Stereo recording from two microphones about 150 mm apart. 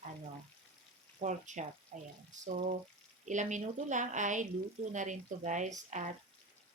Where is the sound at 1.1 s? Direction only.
55° right (ahead or behind).